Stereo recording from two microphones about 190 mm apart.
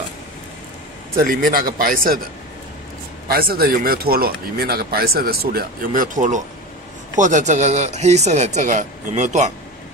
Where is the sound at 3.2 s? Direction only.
50° right (ahead or behind).